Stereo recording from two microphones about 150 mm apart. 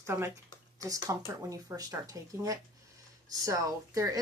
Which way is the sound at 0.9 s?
20° right (ahead or behind).